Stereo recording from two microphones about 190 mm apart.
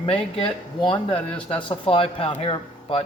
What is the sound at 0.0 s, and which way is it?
Speech, 30° left (ahead or behind).